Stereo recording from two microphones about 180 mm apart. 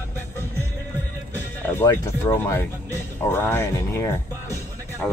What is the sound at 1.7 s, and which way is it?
Speech, 15° left (ahead or behind).